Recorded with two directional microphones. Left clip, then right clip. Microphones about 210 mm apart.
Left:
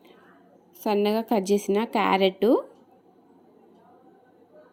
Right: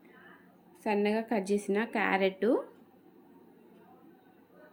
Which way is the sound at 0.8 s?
30° left (ahead or behind).